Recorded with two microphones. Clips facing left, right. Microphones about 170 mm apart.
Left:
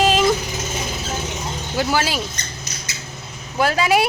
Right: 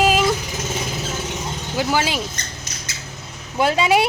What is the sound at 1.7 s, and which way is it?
Speech, 15° right (ahead or behind).